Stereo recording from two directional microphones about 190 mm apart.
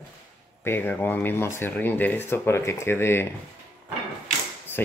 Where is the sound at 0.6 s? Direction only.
10° left (ahead or behind).